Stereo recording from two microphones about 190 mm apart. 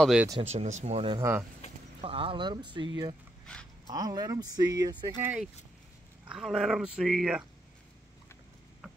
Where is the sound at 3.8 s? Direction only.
20° right (ahead or behind); by 7.5 s 5° right (ahead or behind).